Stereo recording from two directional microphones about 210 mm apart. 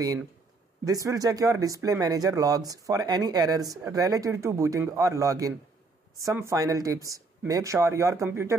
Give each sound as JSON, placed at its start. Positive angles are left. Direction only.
{"t": 0.8, "sound": "speech", "side_deg": -15}